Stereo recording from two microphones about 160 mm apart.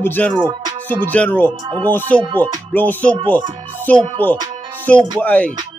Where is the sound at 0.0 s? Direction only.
10° left (ahead or behind).